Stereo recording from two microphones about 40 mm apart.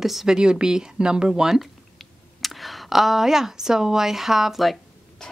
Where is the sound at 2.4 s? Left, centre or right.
Centre.